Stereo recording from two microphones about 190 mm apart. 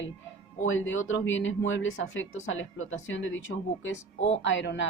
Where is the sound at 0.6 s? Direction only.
90° left.